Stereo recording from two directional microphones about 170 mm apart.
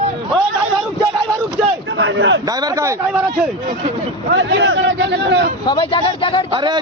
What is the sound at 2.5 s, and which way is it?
Speech, 20° right (ahead or behind).